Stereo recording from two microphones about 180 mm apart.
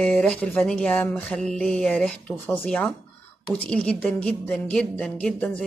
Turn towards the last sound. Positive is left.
turn(degrees=5)  # may be behind; listen again after turning